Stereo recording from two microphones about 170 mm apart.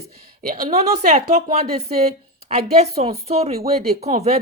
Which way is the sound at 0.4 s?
55° right (ahead or behind).